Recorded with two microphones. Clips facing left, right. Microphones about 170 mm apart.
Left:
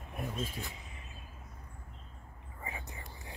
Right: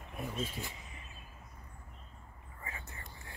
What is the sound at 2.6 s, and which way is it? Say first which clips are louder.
Whispering: left 4 dB; 15° left (ahead or behind).